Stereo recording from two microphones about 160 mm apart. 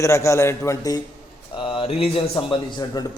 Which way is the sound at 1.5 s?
35° left (ahead or behind).